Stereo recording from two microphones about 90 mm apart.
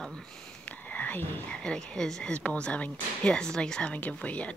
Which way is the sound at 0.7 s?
15° left (ahead or behind).